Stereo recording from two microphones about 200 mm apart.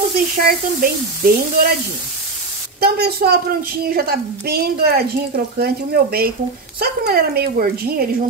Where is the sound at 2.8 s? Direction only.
50° right (ahead or behind).